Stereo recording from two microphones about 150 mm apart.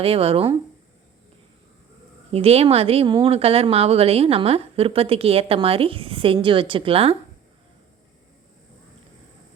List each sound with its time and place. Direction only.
0.0 s a woman's voice: 40° right (ahead or behind)
2.3 s a woman's voice: 40° right (ahead or behind)